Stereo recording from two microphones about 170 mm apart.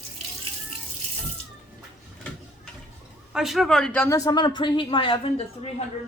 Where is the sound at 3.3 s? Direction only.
Centre (ahead or behind); by 5.3 s 30° left (ahead or behind).